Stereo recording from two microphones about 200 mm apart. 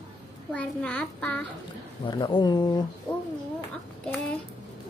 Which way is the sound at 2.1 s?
20° left (ahead or behind).